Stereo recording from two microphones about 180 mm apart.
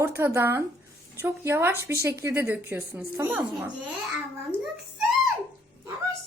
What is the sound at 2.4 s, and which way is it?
Speech, 5° right (ahead or behind).